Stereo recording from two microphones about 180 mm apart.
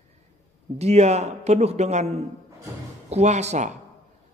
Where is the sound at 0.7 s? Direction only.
35° right (ahead or behind).